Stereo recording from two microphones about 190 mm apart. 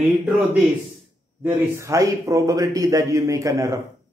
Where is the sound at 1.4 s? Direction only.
15° right (ahead or behind).